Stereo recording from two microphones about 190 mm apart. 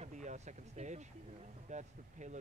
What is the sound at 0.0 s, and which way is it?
Speech, 40° right (ahead or behind).